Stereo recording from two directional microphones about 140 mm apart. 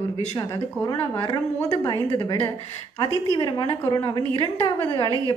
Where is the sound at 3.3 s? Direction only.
35° left (ahead or behind).